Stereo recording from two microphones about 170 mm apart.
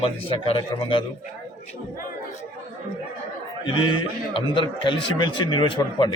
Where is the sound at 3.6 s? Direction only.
30° left (ahead or behind).